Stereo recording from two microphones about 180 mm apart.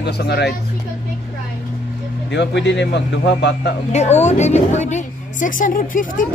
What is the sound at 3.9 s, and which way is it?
A woman's voice, 40° left (ahead or behind).